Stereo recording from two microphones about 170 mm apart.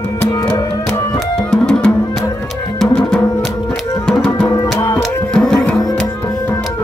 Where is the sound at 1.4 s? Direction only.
5° left (ahead or behind).